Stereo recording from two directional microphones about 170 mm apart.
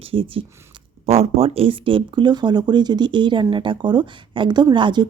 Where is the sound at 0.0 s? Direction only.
30° right (ahead or behind).